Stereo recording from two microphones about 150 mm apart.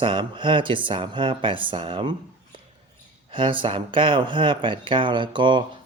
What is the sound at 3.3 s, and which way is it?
Speech, 35° right (ahead or behind).